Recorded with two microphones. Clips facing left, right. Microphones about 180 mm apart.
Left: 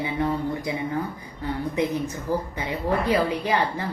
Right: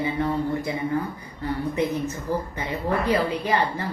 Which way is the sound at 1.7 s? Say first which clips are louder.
Even; 15° left (ahead or behind).